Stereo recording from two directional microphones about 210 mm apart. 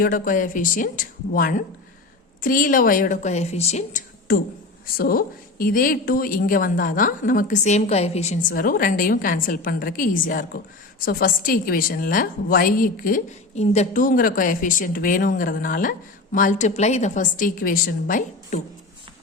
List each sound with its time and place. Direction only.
0.0 s a woman's voice: 40° left (ahead or behind)